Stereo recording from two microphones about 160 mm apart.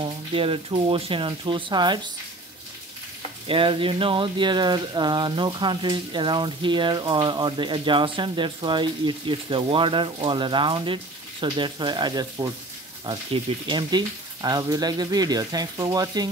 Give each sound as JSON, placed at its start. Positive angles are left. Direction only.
{"t": 0.0, "sound": "speech", "side_deg": -35}
{"t": 3.4, "sound": "speech", "side_deg": -35}